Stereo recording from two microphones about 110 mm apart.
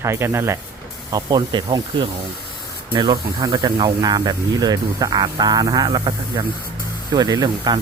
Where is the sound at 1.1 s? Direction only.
40° right (ahead or behind).